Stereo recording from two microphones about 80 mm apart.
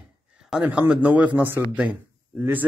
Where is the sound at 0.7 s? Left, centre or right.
Centre.